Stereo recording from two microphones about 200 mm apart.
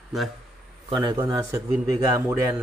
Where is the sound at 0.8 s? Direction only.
20° right (ahead or behind).